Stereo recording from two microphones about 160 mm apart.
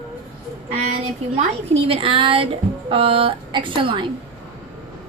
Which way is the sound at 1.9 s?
35° right (ahead or behind).